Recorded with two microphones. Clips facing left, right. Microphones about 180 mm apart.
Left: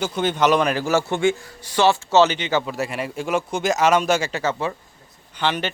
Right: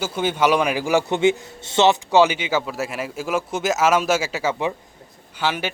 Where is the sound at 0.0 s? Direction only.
10° right (ahead or behind).